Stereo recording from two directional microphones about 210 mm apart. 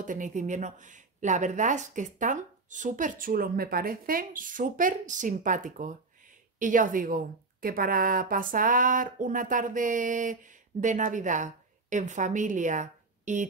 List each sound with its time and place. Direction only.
0.0 s a woman's voice: 35° right (ahead or behind)